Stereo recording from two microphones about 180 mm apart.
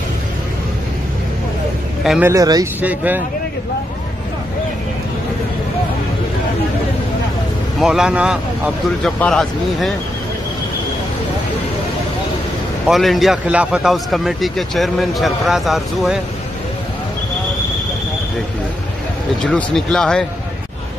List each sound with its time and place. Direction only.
2.0 s speech: 5° right (ahead or behind)
2.3 s speech: 20° right (ahead or behind)
2.8 s speech: 10° right (ahead or behind)
7.8 s a man's voice: 5° right (ahead or behind)
12.8 s a man's voice: centre (ahead or behind)
19.4 s a man's voice: 5° left (ahead or behind)